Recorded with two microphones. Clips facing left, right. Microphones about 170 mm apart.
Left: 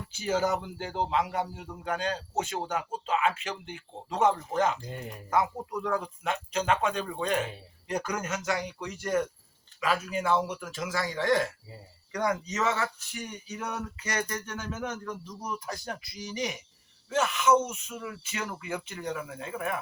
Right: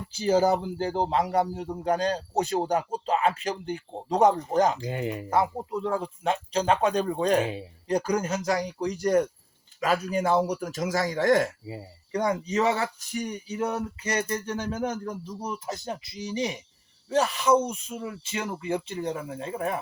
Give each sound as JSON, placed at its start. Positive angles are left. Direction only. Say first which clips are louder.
{"t": 0.1, "sound": "a man's voice", "louder": "right 6 dB", "side_deg": -35}
{"t": 4.8, "sound": "speech", "louder": "right 10 dB", "side_deg": -90}
{"t": 5.3, "sound": "a man's voice", "louder": "right 1 dB", "side_deg": -30}
{"t": 11.6, "sound": "speech", "louder": "right 10 dB", "side_deg": -90}
{"t": 12.1, "sound": "speech", "louder": "right 4 dB", "side_deg": -30}